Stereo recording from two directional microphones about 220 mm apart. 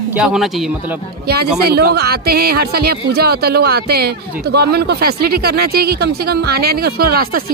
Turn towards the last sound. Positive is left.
turn(degrees=-45)  # may be behind; listen again after turning